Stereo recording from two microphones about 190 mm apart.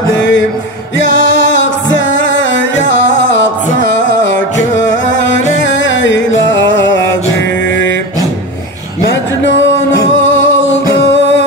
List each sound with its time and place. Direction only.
0.2 s music: 75° left (ahead or behind)
4.7 s music: 70° left (ahead or behind)
9.0 s music: 70° left (ahead or behind)
11.0 s music: 75° left (ahead or behind)